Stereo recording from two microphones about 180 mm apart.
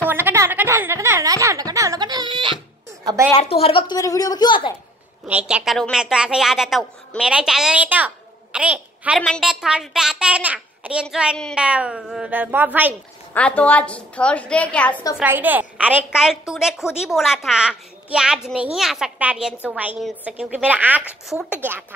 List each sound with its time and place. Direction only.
0.1 s speech: 15° right (ahead or behind)
3.0 s a sound: 20° right (ahead or behind)
3.3 s a woman's voice: 35° left (ahead or behind)
5.2 s a woman's voice: 5° right (ahead or behind)
13.3 s a woman's voice: 10° left (ahead or behind)
15.1 s a woman's voice: 10° right (ahead or behind)